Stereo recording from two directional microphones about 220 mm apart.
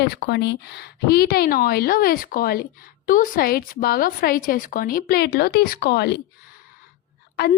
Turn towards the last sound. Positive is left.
turn(degrees=45)  # may be behind; listen again after turning